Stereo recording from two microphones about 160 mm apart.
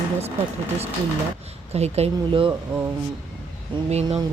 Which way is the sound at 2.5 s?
15° right (ahead or behind).